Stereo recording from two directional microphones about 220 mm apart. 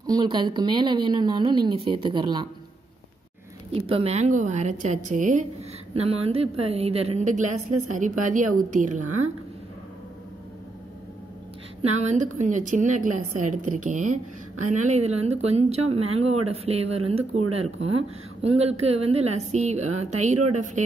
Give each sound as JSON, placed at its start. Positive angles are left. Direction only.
{"t": 0.0, "sound": "a woman's voice", "side_deg": -20}
{"t": 3.8, "sound": "a woman's voice", "side_deg": -25}
{"t": 11.8, "sound": "a woman's voice", "side_deg": -30}
{"t": 20.3, "sound": "speech", "side_deg": -90}